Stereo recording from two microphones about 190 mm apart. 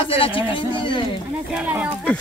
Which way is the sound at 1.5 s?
10° right (ahead or behind).